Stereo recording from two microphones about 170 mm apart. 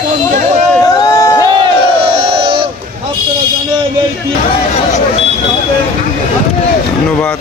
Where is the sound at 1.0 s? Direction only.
20° left (ahead or behind).